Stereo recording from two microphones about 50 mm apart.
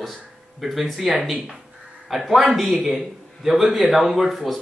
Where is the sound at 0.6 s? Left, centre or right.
Centre.